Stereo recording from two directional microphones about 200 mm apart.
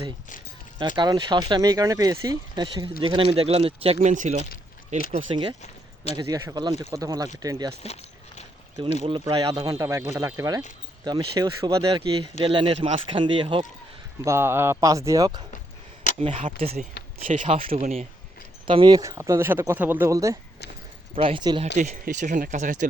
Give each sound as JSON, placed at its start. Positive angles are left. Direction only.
{"t": 0.8, "sound": "speech", "side_deg": -20}
{"t": 5.1, "sound": "speech", "side_deg": -25}
{"t": 14.3, "sound": "speech", "side_deg": -10}
{"t": 16.4, "sound": "speech", "side_deg": -35}
{"t": 21.8, "sound": "speech", "side_deg": -40}